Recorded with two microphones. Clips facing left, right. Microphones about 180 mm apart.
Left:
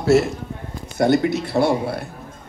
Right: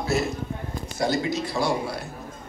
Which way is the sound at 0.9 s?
60° left (ahead or behind).